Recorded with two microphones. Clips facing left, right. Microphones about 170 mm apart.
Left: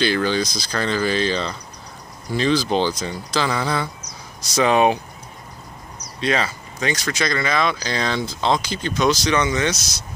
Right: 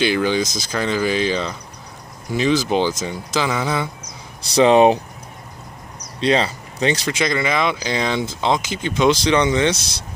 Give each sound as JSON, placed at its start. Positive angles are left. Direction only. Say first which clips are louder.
{"t": 0.0, "sound": "speech", "louder": "right 2 dB", "side_deg": -15}
{"t": 4.6, "sound": "speech", "louder": "right 5 dB", "side_deg": -30}
{"t": 6.2, "sound": "speech", "louder": "right 4 dB", "side_deg": -30}
{"t": 7.2, "sound": "speech", "louder": "right 2 dB", "side_deg": -15}